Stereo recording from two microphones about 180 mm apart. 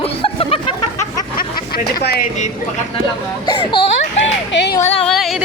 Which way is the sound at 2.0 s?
60° left (ahead or behind).